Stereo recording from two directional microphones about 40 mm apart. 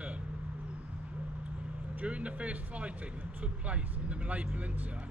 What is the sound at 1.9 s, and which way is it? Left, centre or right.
Speech, right.